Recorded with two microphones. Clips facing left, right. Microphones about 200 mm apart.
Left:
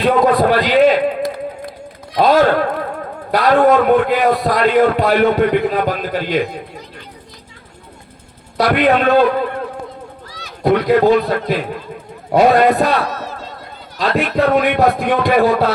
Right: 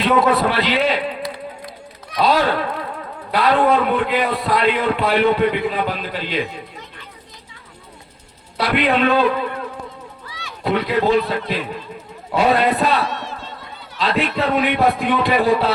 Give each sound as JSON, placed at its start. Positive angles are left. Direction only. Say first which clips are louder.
{"t": 0.0, "sound": "a sound", "louder": "left 3 dB", "side_deg": 45}
{"t": 3.3, "sound": "a man's voice", "louder": "left 4 dB", "side_deg": 45}
{"t": 8.5, "sound": "a man's voice", "louder": "left 4 dB", "side_deg": 45}
{"t": 10.2, "sound": "a man's voice", "louder": "left 7 dB", "side_deg": 40}